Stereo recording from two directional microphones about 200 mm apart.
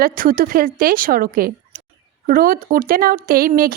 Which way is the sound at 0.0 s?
45° right (ahead or behind).